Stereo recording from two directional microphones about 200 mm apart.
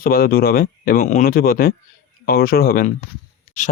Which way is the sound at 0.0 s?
50° left (ahead or behind).